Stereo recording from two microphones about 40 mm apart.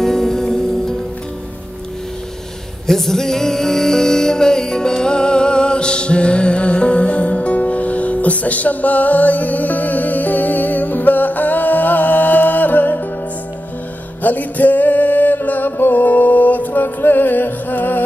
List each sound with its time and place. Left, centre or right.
0.0 s music: centre
2.9 s music: centre; by 13.0 s left
14.2 s music: left